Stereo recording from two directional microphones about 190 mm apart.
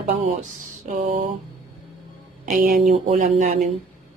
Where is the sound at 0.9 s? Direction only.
40° right (ahead or behind).